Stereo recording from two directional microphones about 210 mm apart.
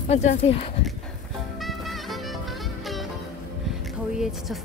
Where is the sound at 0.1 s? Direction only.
30° left (ahead or behind).